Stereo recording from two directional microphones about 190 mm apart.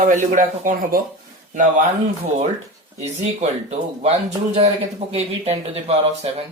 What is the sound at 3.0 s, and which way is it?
Speech, 35° right (ahead or behind).